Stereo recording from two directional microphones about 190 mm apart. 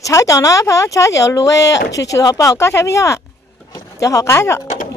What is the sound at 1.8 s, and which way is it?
Speech, 65° left (ahead or behind).